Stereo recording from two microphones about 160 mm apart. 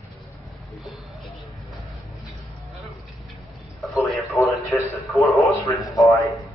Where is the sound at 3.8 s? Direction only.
Centre (ahead or behind).